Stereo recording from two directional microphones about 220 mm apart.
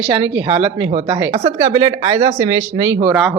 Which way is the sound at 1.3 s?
25° right (ahead or behind).